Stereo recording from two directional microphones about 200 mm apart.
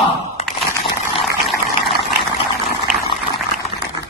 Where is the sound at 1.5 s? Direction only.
Centre (ahead or behind).